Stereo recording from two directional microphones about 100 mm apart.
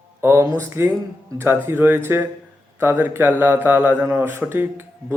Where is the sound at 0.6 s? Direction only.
25° right (ahead or behind).